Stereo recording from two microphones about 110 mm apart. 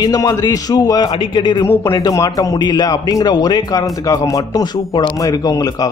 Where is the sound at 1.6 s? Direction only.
30° left (ahead or behind).